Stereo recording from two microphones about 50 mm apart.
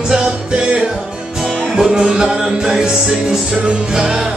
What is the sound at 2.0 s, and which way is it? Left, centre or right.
Music, centre.